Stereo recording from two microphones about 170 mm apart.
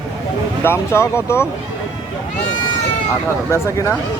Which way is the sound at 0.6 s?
15° left (ahead or behind).